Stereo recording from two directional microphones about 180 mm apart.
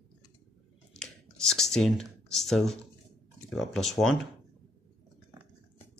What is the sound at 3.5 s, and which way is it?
Speech, centre (ahead or behind).